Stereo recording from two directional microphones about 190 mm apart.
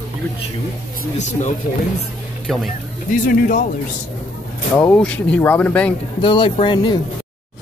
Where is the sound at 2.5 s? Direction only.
Centre (ahead or behind).